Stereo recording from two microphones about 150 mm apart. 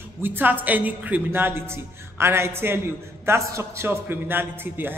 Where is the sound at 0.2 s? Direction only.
15° right (ahead or behind).